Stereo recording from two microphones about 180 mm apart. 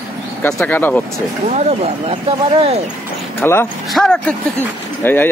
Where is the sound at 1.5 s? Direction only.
35° right (ahead or behind).